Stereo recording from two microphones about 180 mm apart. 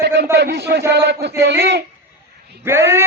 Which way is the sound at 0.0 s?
70° right (ahead or behind).